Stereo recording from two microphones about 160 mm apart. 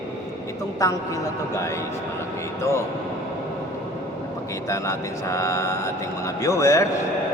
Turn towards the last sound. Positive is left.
turn(degrees=20)  # may be behind; listen again after turning